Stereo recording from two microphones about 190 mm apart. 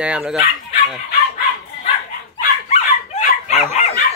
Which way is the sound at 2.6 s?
35° left (ahead or behind).